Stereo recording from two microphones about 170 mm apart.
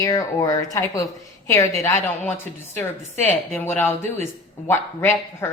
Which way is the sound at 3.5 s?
10° left (ahead or behind).